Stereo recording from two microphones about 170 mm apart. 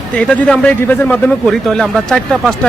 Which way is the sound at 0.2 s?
5° left (ahead or behind).